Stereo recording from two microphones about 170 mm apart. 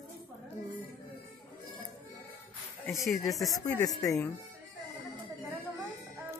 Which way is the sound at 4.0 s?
15° left (ahead or behind).